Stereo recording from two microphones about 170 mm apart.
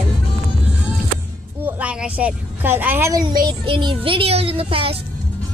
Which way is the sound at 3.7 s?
30° right (ahead or behind).